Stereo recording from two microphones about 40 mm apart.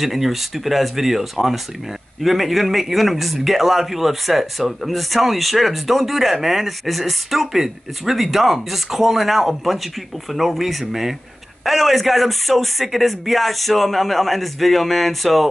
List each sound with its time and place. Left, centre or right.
0.0 s speech: centre